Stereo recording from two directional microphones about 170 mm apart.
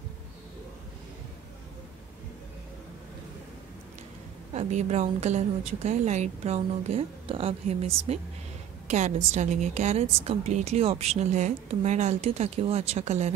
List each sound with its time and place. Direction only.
4.6 s a woman's voice: 40° right (ahead or behind)